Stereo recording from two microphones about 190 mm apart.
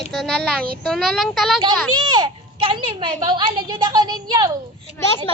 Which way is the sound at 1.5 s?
25° right (ahead or behind).